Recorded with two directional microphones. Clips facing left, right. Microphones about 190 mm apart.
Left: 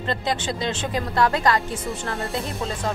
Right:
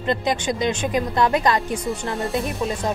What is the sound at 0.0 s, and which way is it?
Speech, 20° right (ahead or behind).